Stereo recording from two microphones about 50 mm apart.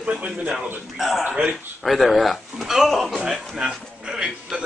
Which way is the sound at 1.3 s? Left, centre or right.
Right.